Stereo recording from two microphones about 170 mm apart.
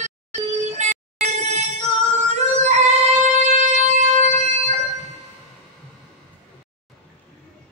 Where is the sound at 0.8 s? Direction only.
40° right (ahead or behind).